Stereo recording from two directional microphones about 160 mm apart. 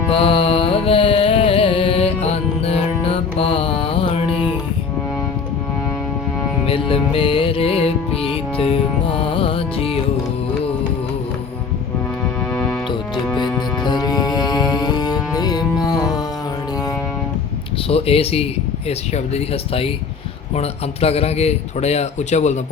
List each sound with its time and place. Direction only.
0.1 s music: 35° left (ahead or behind)
6.7 s music: 35° left (ahead or behind)
13.3 s music: 25° left (ahead or behind)
17.8 s a man's voice: 35° left (ahead or behind)